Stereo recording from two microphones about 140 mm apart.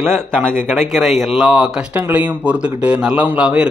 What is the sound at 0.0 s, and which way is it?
Speech, 15° right (ahead or behind).